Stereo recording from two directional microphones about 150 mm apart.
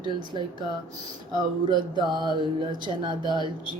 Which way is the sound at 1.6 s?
30° right (ahead or behind).